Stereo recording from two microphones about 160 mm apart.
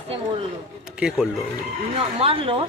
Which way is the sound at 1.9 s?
35° right (ahead or behind).